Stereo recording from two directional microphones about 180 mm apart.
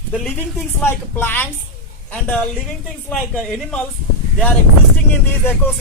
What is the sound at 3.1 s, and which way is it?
Speech, 5° left (ahead or behind).